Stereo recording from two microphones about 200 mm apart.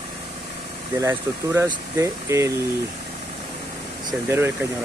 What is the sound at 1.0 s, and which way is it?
Speech, 15° right (ahead or behind).